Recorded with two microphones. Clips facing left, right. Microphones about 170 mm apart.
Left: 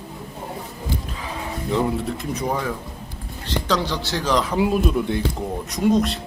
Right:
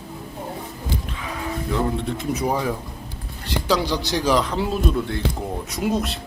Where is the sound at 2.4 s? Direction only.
10° right (ahead or behind).